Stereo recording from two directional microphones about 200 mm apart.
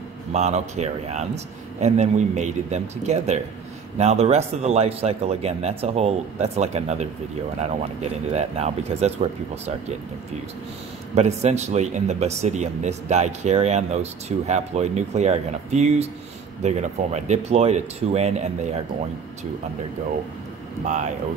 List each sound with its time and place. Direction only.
0.3 s a man's voice: 35° right (ahead or behind)
11.1 s a man's voice: 35° right (ahead or behind)
20.8 s a man's voice: 35° right (ahead or behind)